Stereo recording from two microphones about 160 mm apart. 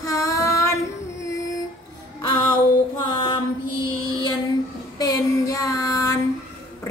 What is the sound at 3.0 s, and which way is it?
Female singing, 30° left (ahead or behind).